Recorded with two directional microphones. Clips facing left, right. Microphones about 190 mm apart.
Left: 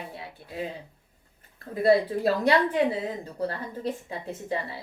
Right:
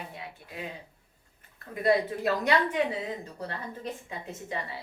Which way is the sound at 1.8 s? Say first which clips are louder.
Left 4 dB; 30° left (ahead or behind).